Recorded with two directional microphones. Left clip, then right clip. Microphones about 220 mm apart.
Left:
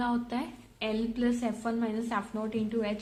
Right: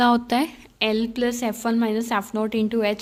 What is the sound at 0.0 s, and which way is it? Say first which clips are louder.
A woman's voice: right 13 dB; 50° right (ahead or behind).